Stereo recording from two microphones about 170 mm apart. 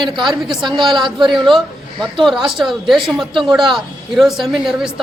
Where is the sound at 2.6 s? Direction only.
Centre (ahead or behind).